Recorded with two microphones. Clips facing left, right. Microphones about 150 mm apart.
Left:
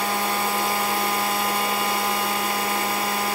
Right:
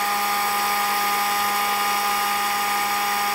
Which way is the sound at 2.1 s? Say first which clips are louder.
Right 1 dB; 45° left (ahead or behind).